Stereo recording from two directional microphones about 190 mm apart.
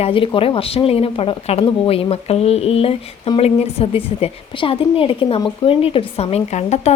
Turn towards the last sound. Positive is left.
turn(degrees=35)  # may be behind; listen again after turning